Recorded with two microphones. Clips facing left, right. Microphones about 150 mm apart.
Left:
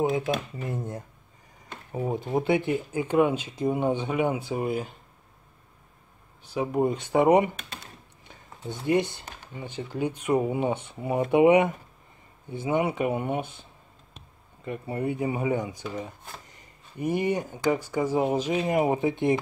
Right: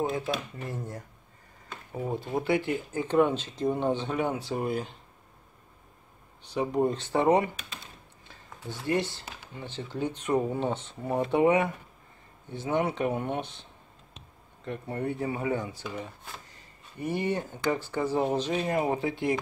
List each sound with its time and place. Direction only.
0.6 s speech: 20° left (ahead or behind)
6.4 s speech: 5° left (ahead or behind)
8.3 s a sound: 20° left (ahead or behind)
9.6 s speech: 10° left (ahead or behind)